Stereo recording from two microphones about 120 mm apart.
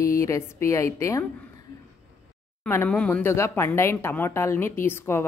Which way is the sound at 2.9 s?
10° left (ahead or behind).